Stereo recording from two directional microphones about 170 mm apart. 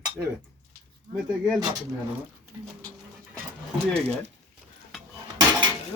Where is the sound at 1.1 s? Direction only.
Centre (ahead or behind).